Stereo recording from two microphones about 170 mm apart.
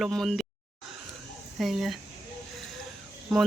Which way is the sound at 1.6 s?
Centre (ahead or behind).